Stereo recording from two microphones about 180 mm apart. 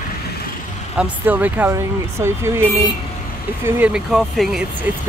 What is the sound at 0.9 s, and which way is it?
Speech, 10° right (ahead or behind).